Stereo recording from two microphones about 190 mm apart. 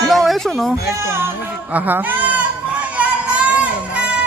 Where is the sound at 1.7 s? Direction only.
10° right (ahead or behind).